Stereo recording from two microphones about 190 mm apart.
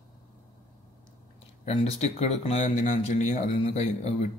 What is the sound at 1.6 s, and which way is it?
Speech, 35° left (ahead or behind).